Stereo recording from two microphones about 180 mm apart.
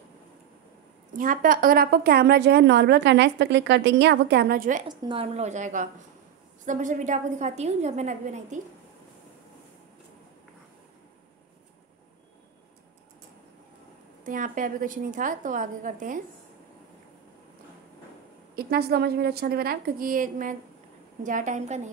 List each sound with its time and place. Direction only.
1.1 s a woman's voice: 50° right (ahead or behind)
4.8 s a woman's voice: 25° right (ahead or behind)
14.2 s a woman's voice: 50° right (ahead or behind)
18.6 s a woman's voice: 60° right (ahead or behind); by 21.8 s 40° right (ahead or behind)